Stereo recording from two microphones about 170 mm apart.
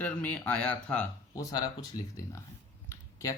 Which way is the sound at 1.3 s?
20° left (ahead or behind).